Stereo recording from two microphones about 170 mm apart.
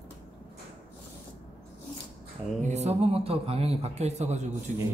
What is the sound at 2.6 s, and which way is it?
A man's voice, 40° right (ahead or behind).